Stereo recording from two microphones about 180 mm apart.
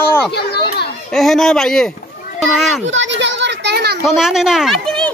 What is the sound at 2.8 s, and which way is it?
Children playing, 90° right.